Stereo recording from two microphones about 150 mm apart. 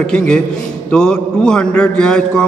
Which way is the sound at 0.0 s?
5° left (ahead or behind).